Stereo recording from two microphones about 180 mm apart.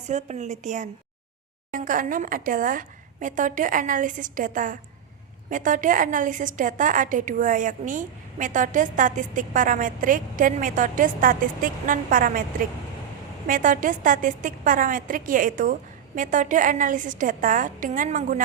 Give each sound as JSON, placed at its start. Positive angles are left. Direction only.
{"t": 0.1, "sound": "a woman's voice", "side_deg": -40}